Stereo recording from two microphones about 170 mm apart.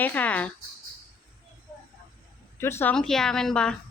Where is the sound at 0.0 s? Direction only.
10° left (ahead or behind).